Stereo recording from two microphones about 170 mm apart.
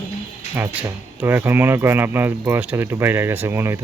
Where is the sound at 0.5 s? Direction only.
10° right (ahead or behind).